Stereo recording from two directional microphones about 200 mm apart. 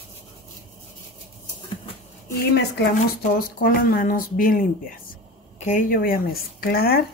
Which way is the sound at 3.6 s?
45° left (ahead or behind).